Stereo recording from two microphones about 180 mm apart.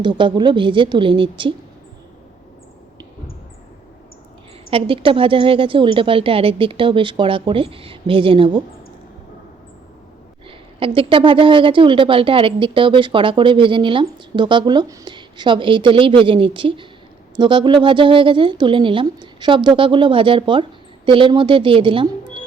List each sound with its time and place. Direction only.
0.0 s a woman's voice: 25° right (ahead or behind)
4.7 s a woman's voice: 30° right (ahead or behind)
10.8 s a woman's voice: 30° right (ahead or behind)